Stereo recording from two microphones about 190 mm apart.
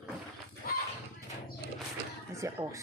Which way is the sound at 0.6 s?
50° left (ahead or behind).